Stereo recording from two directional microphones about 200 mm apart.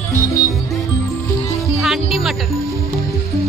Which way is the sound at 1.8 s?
Centre (ahead or behind).